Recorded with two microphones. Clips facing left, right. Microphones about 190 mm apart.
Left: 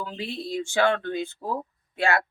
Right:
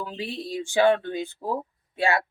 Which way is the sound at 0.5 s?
15° right (ahead or behind).